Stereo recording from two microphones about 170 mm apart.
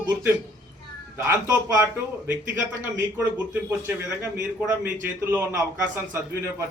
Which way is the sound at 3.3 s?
10° right (ahead or behind).